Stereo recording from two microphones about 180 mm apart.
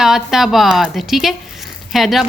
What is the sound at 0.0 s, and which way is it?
A woman's voice, centre (ahead or behind).